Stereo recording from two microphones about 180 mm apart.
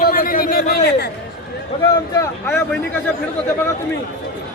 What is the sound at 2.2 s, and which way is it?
Speech, 10° left (ahead or behind).